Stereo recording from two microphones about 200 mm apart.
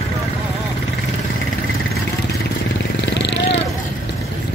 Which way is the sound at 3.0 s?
60° left (ahead or behind).